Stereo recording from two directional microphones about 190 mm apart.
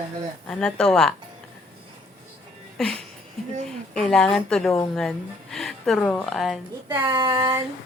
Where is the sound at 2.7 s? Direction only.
5° left (ahead or behind).